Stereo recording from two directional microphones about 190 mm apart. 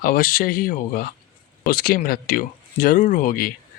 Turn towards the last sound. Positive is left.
turn(degrees=50)  # may be behind; listen again after turning